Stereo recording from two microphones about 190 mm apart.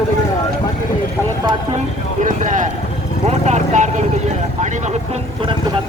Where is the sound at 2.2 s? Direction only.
40° right (ahead or behind).